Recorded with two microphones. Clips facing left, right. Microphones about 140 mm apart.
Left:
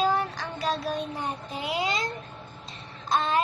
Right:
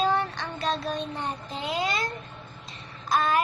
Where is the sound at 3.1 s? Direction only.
25° left (ahead or behind).